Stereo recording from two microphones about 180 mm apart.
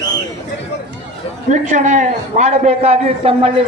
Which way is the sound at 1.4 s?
40° right (ahead or behind).